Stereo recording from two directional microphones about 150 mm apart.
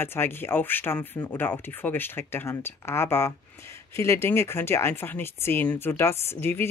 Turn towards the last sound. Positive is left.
turn(degrees=15)  # may be behind; listen again after turning